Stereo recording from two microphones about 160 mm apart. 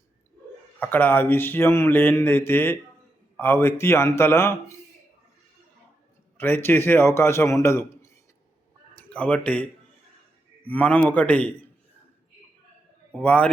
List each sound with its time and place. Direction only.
0.8 s mantra: 10° left (ahead or behind)
6.3 s mantra: 15° left (ahead or behind)
9.0 s speech: 10° left (ahead or behind)
10.7 s mantra: 10° left (ahead or behind)
13.2 s mantra: 10° left (ahead or behind)